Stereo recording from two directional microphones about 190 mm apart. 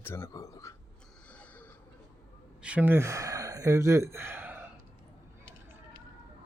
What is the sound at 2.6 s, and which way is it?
Speech, 5° right (ahead or behind).